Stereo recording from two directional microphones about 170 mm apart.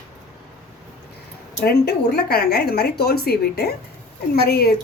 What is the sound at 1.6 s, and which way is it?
A woman's voice, 70° left (ahead or behind).